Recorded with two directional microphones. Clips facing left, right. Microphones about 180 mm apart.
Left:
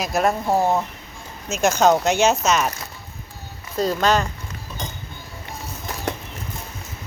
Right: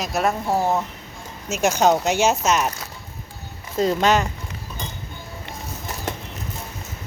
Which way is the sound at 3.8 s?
20° right (ahead or behind).